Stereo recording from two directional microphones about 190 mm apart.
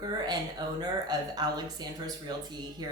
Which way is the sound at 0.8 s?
20° right (ahead or behind).